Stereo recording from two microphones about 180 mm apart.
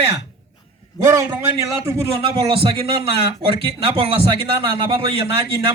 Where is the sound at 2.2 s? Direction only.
30° right (ahead or behind).